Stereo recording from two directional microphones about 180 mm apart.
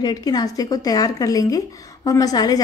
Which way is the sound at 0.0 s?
20° left (ahead or behind).